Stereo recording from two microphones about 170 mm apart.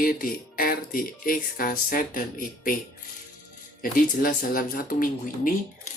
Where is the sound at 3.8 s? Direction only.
55° left (ahead or behind).